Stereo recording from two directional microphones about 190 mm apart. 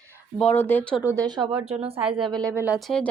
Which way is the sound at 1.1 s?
20° right (ahead or behind).